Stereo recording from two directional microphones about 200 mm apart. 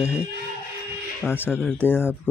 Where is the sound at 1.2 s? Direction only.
10° left (ahead or behind).